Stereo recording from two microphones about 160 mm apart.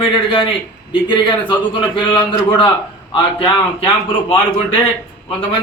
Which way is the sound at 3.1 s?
35° left (ahead or behind).